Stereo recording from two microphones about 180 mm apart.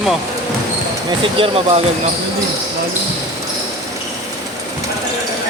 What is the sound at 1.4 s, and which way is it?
Speech, 30° right (ahead or behind).